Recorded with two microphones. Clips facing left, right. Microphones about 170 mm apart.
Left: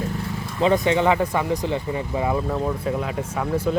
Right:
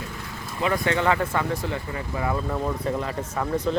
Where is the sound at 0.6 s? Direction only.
20° left (ahead or behind).